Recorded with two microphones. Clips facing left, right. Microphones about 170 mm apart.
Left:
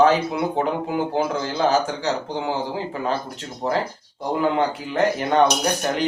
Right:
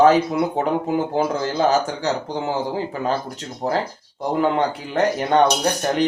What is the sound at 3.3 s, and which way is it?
Speech, 40° right (ahead or behind).